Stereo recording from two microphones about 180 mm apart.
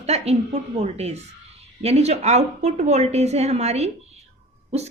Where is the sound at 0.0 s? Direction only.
35° right (ahead or behind).